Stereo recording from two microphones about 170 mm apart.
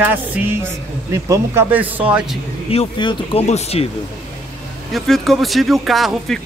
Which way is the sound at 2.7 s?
30° left (ahead or behind).